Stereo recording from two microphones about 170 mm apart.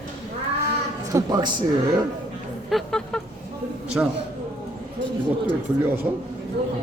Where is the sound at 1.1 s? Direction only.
20° right (ahead or behind).